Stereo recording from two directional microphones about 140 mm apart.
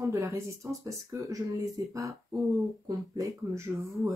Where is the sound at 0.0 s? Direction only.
20° right (ahead or behind).